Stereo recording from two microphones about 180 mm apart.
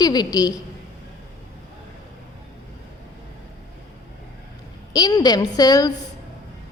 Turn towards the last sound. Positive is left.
turn(degrees=20)  # may be behind; listen again after turning